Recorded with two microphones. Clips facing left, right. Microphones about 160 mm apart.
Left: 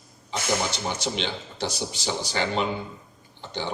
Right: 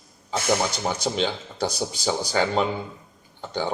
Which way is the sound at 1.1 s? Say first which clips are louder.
Right 5 dB; 45° right (ahead or behind).